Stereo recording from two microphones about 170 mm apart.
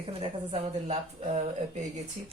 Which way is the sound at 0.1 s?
35° right (ahead or behind).